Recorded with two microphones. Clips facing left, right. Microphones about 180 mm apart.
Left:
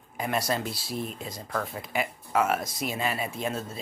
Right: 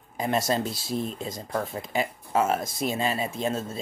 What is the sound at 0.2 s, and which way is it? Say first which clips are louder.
Speech: right 3 dB; 25° right (ahead or behind).